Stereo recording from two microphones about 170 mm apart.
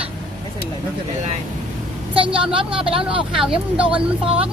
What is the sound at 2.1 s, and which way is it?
Speech, 30° right (ahead or behind).